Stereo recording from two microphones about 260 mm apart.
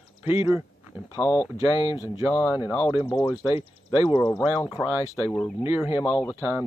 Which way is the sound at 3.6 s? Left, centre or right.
Centre.